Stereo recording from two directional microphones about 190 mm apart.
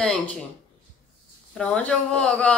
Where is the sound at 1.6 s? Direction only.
5° left (ahead or behind).